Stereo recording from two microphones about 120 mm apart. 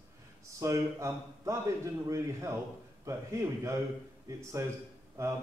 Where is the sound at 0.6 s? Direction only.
25° right (ahead or behind).